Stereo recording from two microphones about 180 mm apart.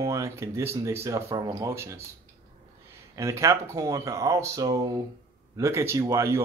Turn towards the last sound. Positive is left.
turn(degrees=-15)  # may be behind; listen again after turning